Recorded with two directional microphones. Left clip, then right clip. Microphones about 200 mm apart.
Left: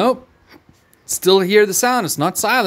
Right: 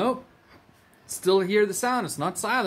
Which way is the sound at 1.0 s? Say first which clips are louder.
Left 8 dB; 55° left (ahead or behind).